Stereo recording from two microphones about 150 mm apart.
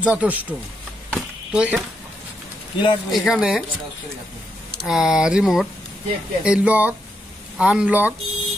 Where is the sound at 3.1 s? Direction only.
Centre (ahead or behind).